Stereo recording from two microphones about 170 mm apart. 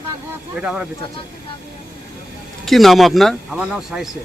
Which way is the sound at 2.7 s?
Centre (ahead or behind).